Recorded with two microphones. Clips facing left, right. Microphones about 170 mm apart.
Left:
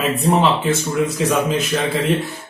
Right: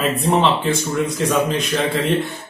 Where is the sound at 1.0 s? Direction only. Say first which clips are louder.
Even; 5° left (ahead or behind).